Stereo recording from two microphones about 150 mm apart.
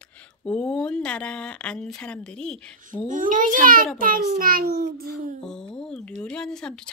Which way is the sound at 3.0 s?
60° right (ahead or behind).